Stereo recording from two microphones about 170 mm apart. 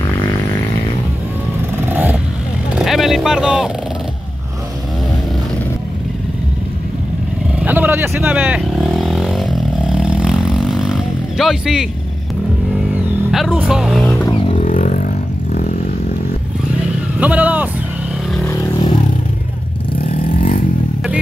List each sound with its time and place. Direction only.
1.9 s vehicle: 10° right (ahead or behind)
2.7 s speech: centre (ahead or behind)
7.5 s vehicle: 10° right (ahead or behind)
13.3 s speech: 5° right (ahead or behind)
14.5 s a sound: 45° left (ahead or behind)
17.2 s speech: 10° right (ahead or behind)
18.5 s a sound: 25° left (ahead or behind)
20.0 s vehicle: 55° left (ahead or behind)